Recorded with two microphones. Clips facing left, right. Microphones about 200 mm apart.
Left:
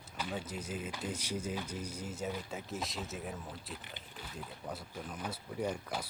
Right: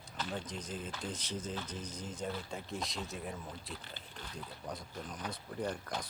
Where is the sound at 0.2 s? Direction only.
5° left (ahead or behind).